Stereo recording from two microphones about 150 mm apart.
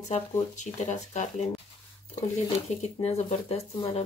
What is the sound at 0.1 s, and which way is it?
Speech, 55° left (ahead or behind).